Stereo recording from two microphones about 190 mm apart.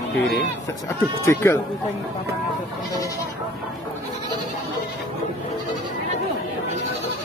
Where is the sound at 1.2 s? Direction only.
15° left (ahead or behind).